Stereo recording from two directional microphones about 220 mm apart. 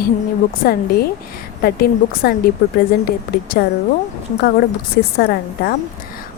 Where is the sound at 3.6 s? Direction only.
45° left (ahead or behind).